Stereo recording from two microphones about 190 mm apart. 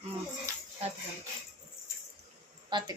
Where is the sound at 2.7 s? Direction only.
25° right (ahead or behind).